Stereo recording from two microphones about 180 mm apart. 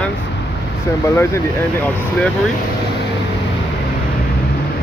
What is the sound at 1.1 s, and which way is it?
Speech, 15° left (ahead or behind).